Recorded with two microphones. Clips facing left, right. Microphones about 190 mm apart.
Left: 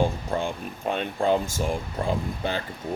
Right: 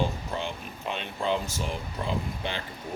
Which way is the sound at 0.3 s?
50° left (ahead or behind).